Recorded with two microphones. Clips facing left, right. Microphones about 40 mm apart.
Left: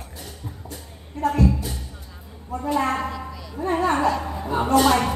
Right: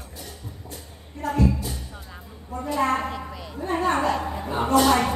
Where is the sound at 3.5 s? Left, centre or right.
Centre.